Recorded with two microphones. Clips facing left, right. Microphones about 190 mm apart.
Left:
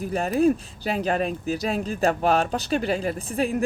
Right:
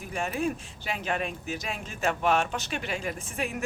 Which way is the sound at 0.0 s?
35° left (ahead or behind).